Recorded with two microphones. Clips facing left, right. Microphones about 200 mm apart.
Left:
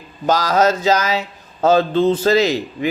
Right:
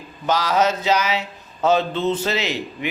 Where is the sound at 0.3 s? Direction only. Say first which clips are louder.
Left 4 dB; 40° left (ahead or behind).